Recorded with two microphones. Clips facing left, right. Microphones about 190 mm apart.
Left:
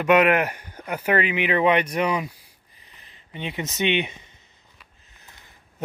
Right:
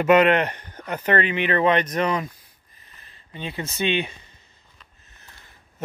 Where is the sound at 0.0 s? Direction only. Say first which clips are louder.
Right 1 dB; 5° left (ahead or behind); by 4.4 s 20° left (ahead or behind).